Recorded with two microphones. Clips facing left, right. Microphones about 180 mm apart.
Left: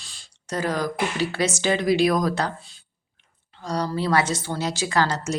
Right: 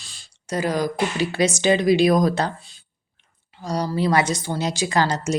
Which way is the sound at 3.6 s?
10° right (ahead or behind).